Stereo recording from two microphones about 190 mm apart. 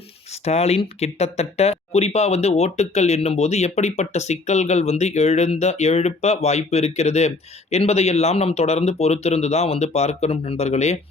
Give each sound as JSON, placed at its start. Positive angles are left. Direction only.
{"t": 0.4, "sound": "speech", "side_deg": 35}